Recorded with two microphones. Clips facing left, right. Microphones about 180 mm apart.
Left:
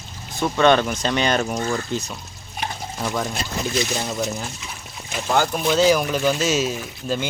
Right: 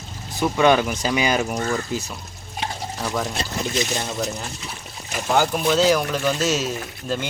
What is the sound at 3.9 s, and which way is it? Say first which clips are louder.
Speech: left 1 dB; 5° left (ahead or behind).